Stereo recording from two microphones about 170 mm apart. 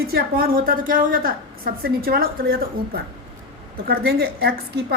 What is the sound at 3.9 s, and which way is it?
Speech, 65° right (ahead or behind).